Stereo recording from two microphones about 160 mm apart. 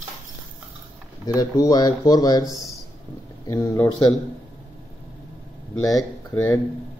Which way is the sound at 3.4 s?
15° left (ahead or behind).